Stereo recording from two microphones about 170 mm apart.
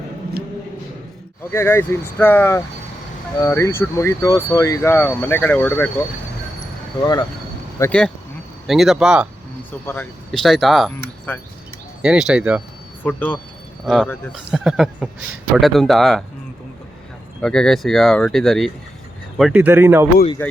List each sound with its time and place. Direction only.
1.5 s speech: 15° left (ahead or behind)
7.0 s speech: 20° left (ahead or behind)
7.8 s speech: 5° left (ahead or behind)
9.8 s speech: 10° left (ahead or behind); by 12.6 s 5° right (ahead or behind)
13.0 s speech: 10° left (ahead or behind)
13.8 s speech: centre (ahead or behind)
17.4 s speech: 5° left (ahead or behind); by 20.1 s 15° right (ahead or behind)